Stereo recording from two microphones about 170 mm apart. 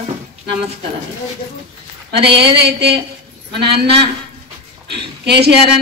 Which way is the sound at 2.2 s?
80° right.